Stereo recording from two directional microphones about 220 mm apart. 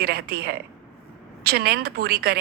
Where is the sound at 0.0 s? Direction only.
45° right (ahead or behind).